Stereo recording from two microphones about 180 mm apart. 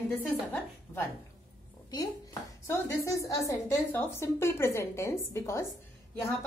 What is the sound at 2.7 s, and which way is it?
A woman's voice, 15° left (ahead or behind).